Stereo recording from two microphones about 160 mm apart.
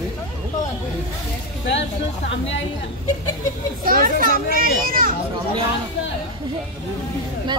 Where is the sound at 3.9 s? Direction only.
60° right (ahead or behind).